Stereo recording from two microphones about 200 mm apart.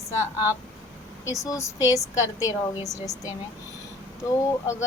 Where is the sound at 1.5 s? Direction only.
15° left (ahead or behind).